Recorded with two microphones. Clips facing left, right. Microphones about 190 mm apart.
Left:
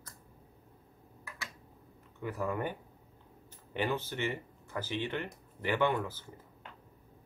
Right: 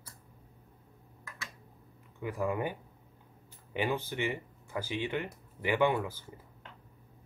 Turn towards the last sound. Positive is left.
turn(degrees=-10)  # may be behind; listen again after turning